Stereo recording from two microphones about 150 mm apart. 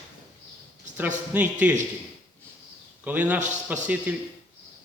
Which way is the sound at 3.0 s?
10° right (ahead or behind).